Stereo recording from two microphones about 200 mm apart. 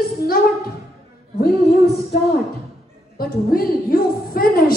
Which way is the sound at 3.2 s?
50° left (ahead or behind).